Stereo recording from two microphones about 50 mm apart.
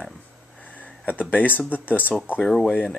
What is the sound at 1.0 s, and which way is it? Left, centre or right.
Speech, left.